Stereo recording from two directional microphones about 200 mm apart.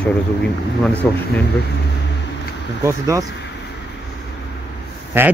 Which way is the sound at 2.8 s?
15° right (ahead or behind).